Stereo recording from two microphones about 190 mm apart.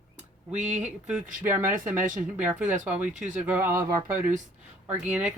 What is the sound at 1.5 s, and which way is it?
Speech, 10° right (ahead or behind).